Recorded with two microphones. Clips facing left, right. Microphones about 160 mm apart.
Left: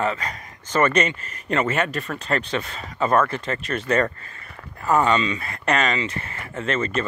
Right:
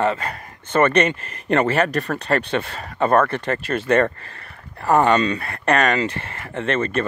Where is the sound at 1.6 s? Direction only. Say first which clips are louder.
Right 3 dB; 35° right (ahead or behind).